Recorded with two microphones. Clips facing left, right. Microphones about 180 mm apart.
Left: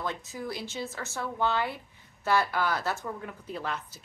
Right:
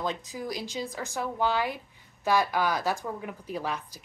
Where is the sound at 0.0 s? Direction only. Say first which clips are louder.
Right 2 dB; 15° right (ahead or behind).